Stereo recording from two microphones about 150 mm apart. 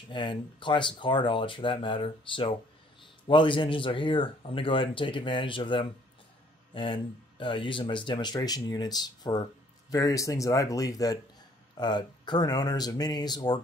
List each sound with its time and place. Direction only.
0.1 s speech: 30° left (ahead or behind)